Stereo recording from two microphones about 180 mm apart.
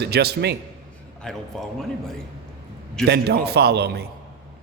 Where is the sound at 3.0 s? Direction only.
65° right (ahead or behind).